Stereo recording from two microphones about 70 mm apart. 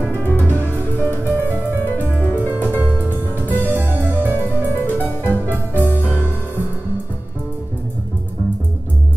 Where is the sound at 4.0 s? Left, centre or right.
Right.